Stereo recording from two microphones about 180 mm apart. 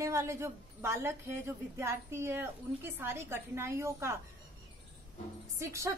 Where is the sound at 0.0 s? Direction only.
15° right (ahead or behind).